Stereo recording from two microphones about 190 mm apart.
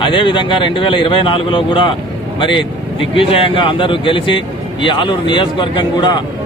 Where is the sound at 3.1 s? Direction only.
30° left (ahead or behind).